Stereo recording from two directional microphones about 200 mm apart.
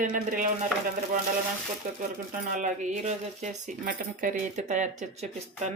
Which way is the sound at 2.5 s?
40° right (ahead or behind).